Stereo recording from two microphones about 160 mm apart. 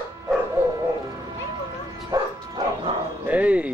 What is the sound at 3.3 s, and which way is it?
Chop, 10° right (ahead or behind).